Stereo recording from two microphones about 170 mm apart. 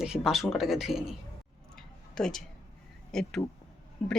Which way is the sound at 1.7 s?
Centre (ahead or behind).